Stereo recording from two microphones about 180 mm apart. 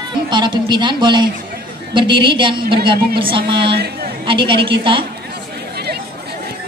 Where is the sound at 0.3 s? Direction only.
25° right (ahead or behind).